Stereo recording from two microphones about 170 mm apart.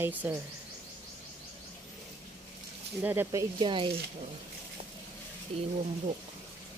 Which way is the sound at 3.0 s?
10° right (ahead or behind).